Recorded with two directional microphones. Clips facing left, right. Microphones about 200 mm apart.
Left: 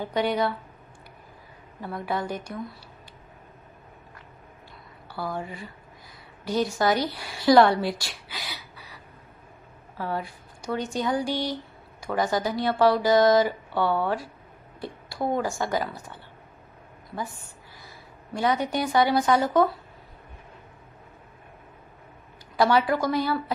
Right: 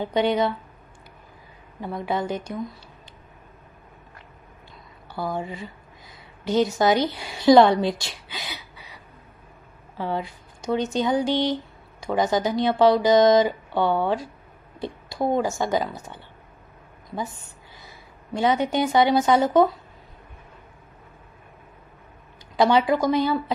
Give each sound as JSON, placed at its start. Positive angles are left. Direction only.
{"t": 0.0, "sound": "speech", "side_deg": -25}
{"t": 1.8, "sound": "speech", "side_deg": -20}
{"t": 5.1, "sound": "a woman's voice", "side_deg": -20}
{"t": 9.9, "sound": "speech", "side_deg": -25}
{"t": 18.3, "sound": "speech", "side_deg": -25}
{"t": 22.6, "sound": "speech", "side_deg": -20}